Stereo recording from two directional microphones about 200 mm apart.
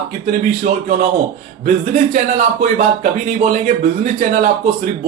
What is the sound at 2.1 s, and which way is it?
A man's voice, 40° right (ahead or behind).